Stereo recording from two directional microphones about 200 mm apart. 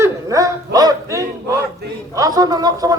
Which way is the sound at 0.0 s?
15° right (ahead or behind).